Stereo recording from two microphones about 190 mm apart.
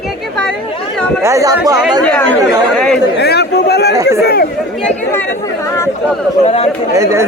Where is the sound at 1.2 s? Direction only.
15° right (ahead or behind).